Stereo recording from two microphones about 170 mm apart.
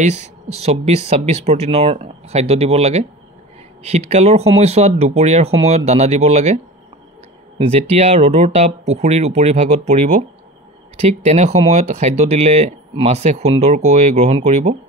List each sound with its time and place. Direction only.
0.6 s speech: 40° right (ahead or behind)